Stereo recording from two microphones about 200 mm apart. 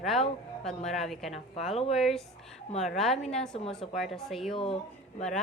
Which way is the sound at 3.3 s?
5° left (ahead or behind).